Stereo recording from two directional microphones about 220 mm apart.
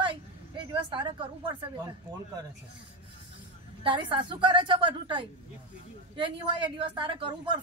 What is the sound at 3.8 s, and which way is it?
A woman's voice, 20° right (ahead or behind).